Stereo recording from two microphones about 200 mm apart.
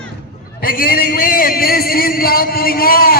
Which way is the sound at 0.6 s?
45° left (ahead or behind).